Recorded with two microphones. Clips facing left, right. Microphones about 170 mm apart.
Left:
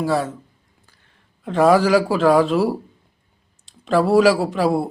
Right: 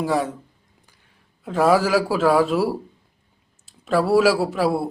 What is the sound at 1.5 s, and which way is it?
A man's voice, 5° right (ahead or behind).